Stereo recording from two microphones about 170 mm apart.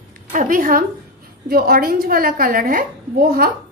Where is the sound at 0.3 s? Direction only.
50° right (ahead or behind).